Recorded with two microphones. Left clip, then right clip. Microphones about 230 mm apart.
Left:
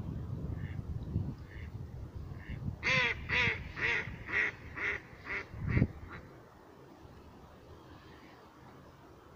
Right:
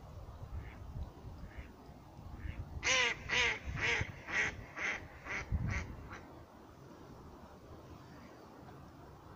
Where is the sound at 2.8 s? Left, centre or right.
Right.